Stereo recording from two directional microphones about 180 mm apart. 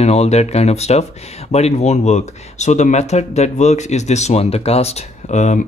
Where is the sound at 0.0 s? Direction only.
35° left (ahead or behind).